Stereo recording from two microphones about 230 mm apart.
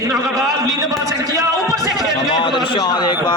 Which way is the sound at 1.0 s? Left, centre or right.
Centre.